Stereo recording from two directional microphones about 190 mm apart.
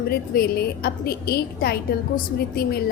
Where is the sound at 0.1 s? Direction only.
50° left (ahead or behind).